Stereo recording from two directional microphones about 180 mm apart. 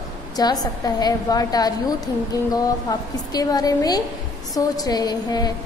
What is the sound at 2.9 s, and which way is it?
A woman's voice, 20° left (ahead or behind).